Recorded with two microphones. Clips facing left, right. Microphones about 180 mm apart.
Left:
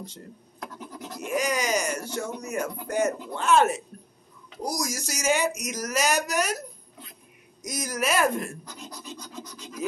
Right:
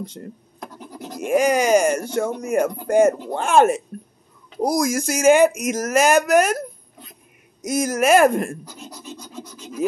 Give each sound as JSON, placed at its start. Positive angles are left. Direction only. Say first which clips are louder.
{"t": 0.2, "sound": "speech", "louder": "right 5 dB", "side_deg": -65}
{"t": 7.6, "sound": "speech", "louder": "right 10 dB", "side_deg": -50}
{"t": 8.6, "sound": "scratch", "louder": "right 3 dB", "side_deg": -10}